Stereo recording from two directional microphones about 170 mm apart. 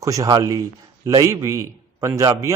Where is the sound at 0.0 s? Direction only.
20° right (ahead or behind).